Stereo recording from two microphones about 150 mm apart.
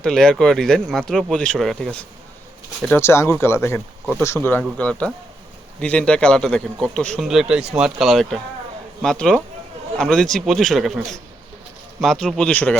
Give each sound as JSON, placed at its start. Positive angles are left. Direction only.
{"t": 0.0, "sound": "speech", "side_deg": 5}
{"t": 2.9, "sound": "speech", "side_deg": 15}